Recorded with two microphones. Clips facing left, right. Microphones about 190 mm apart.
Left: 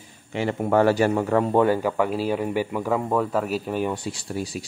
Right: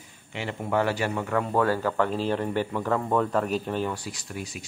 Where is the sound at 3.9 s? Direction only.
30° left (ahead or behind).